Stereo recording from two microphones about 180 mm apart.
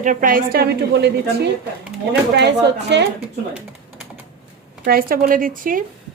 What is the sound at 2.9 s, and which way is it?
Speech, 70° right (ahead or behind).